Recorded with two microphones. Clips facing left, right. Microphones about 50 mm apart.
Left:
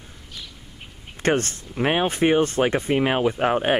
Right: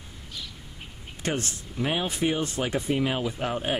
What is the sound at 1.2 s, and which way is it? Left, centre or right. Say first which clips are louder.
Speech: left 8 dB; left.